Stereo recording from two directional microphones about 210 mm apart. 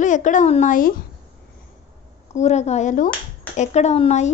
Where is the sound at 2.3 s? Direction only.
35° left (ahead or behind).